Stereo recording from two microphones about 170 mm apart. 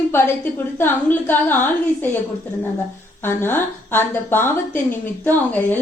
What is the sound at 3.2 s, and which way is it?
A woman's voice, 15° left (ahead or behind).